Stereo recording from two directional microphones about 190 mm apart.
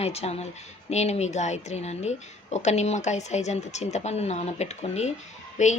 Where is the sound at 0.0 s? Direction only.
35° left (ahead or behind).